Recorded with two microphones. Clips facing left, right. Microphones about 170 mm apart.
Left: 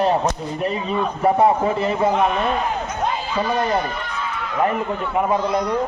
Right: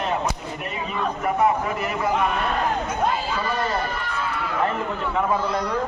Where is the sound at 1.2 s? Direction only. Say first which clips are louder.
Left 5 dB; 30° left (ahead or behind).